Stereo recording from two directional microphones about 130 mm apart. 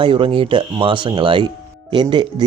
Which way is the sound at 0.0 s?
40° right (ahead or behind).